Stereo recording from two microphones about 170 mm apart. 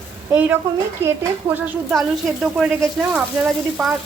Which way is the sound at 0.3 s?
10° right (ahead or behind).